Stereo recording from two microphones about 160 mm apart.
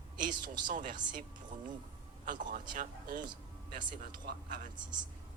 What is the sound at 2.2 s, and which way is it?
Speech, 55° right (ahead or behind).